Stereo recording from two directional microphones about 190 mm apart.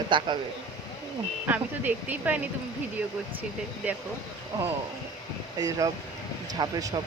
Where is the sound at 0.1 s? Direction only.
25° right (ahead or behind).